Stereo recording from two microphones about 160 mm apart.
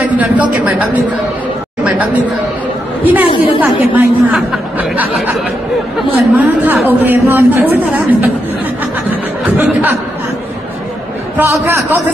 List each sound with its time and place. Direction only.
0.0 s speech: 10° right (ahead or behind)
3.0 s a woman's voice: 10° right (ahead or behind)
3.3 s a woman's voice: 35° left (ahead or behind)
3.6 s speech: 10° right (ahead or behind)
6.3 s speech: 10° right (ahead or behind)
9.1 s a sound: 10° right (ahead or behind)
11.3 s speech: 15° right (ahead or behind)